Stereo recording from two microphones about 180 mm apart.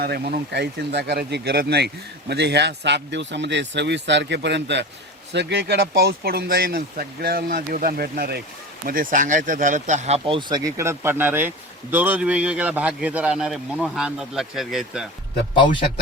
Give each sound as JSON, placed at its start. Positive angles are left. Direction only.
{"t": 0.0, "sound": "speech", "side_deg": -60}
{"t": 10.8, "sound": "speech", "side_deg": -15}